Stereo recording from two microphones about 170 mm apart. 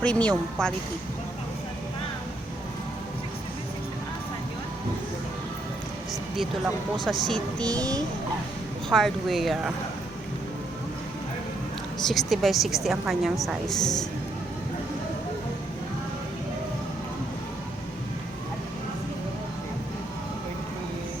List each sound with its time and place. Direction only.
0.0 s a woman's voice: 5° left (ahead or behind)
7.3 s a woman's voice: 5° left (ahead or behind)
7.8 s a child's voice: 20° right (ahead or behind)
8.9 s a woman's voice: centre (ahead or behind)
12.0 s a woman's voice: centre (ahead or behind)